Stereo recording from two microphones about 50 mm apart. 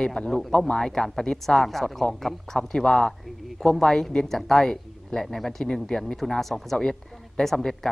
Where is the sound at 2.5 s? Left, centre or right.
Centre.